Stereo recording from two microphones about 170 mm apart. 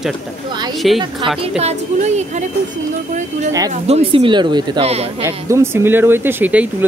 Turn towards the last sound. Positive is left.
turn(degrees=-10)  # may be behind; listen again after turning